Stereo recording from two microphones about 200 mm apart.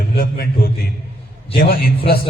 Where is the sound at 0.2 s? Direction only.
45° left (ahead or behind).